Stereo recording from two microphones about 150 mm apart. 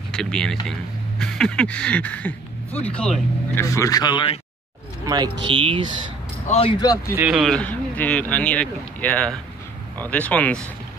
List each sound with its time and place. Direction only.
0.1 s speech: 5° left (ahead or behind)
3.6 s speech: 20° left (ahead or behind)
5.0 s speech: 25° right (ahead or behind)
5.5 s speech: 35° right (ahead or behind)
6.5 s speech: 40° left (ahead or behind)
6.8 s speech: 25° left (ahead or behind)
7.2 s speech: 5° right (ahead or behind)
7.5 s speech: 10° left (ahead or behind)